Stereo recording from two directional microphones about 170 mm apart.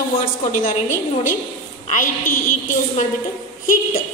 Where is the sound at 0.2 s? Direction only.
50° left (ahead or behind).